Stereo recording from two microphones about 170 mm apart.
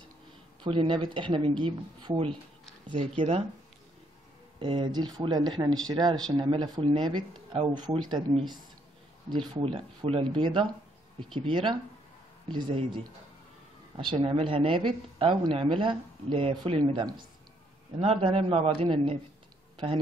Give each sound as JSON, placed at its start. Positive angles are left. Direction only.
{"t": 0.7, "sound": "speech", "side_deg": -30}
{"t": 4.6, "sound": "speech", "side_deg": -25}